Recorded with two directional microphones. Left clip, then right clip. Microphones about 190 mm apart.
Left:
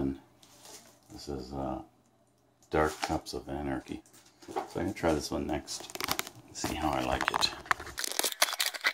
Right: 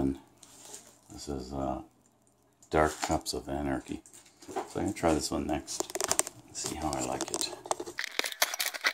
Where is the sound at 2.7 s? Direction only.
25° right (ahead or behind).